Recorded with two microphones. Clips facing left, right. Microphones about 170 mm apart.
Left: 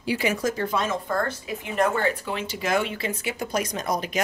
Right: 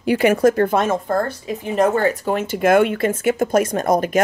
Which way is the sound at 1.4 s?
35° right (ahead or behind).